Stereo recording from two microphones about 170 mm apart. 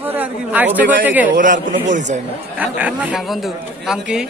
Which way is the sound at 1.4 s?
50° right (ahead or behind).